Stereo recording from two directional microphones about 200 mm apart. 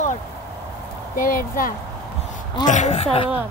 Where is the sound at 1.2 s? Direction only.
45° left (ahead or behind).